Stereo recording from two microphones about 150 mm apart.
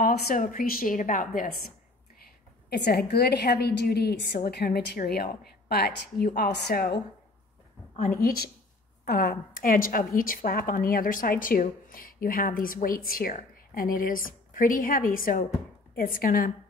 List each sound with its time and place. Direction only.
0.0 s a woman's voice: 75° left (ahead or behind)
2.8 s a woman's voice: 90° left
8.2 s a woman's voice: 80° left